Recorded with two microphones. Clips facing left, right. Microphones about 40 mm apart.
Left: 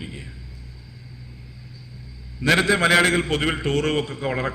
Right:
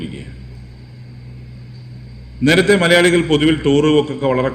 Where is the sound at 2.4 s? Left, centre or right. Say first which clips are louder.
Right 6 dB; right.